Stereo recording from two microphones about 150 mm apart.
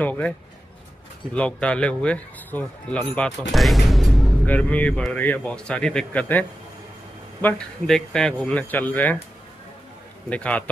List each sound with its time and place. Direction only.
0.0 s speech: 10° left (ahead or behind)
1.3 s speech: 5° left (ahead or behind)
7.4 s speech: 5° left (ahead or behind)
10.3 s speech: 10° left (ahead or behind)